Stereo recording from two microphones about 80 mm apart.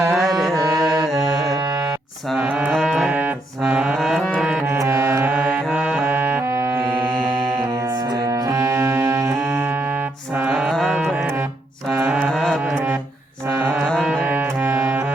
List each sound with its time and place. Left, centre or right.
0.1 s music: centre
0.6 s music: right
1.2 s mantra: right
2.4 s saxophone: centre
3.1 s music: centre
4.6 s music: right
5.7 s brass instrument: centre
6.1 s music: right
7.8 s music: right; by 10.6 s centre
10.6 s music: centre
12.0 s mantra: right
12.3 s music: centre
13.8 s music: centre
14.3 s music: right